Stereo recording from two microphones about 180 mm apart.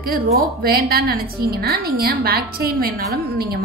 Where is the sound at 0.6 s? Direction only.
60° right (ahead or behind).